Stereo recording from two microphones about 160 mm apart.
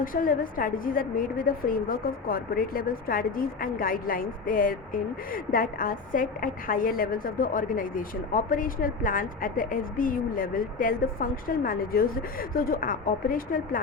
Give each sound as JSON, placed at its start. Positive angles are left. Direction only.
{"t": 0.0, "sound": "a woman's voice", "side_deg": 60}